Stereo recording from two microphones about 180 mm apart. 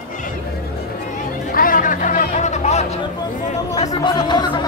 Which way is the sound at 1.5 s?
50° left (ahead or behind).